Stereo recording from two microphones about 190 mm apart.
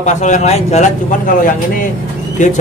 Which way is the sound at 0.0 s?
40° left (ahead or behind).